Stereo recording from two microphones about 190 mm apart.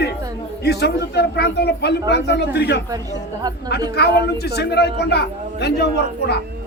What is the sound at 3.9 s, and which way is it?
A man's voice, 60° left (ahead or behind).